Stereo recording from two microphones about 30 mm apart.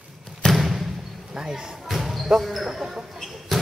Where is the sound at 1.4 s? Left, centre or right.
Right.